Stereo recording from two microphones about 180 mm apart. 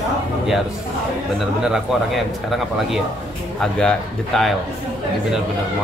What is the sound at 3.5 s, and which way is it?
Speech, 5° left (ahead or behind).